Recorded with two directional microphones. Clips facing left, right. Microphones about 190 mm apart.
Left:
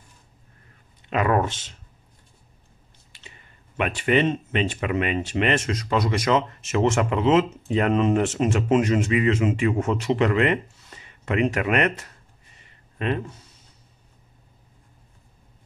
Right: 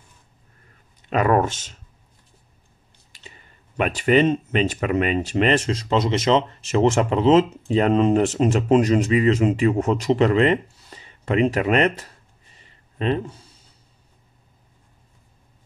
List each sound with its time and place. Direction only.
1.1 s speech: 45° right (ahead or behind)
3.1 s speech: 40° right (ahead or behind)
12.5 s a sound: 35° right (ahead or behind)